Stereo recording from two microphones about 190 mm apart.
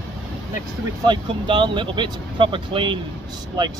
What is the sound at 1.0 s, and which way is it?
Speech, 25° right (ahead or behind).